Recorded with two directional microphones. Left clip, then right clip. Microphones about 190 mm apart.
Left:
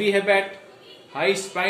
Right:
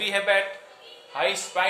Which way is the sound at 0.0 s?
15° right (ahead or behind).